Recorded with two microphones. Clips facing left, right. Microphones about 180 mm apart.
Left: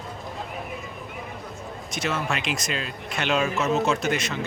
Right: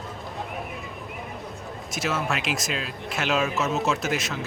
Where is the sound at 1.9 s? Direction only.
Centre (ahead or behind).